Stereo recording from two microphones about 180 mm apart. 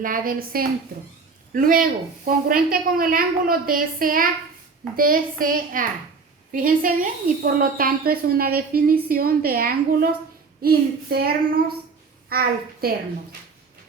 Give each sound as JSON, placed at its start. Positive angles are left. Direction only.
{"t": 0.0, "sound": "a woman's voice", "side_deg": -50}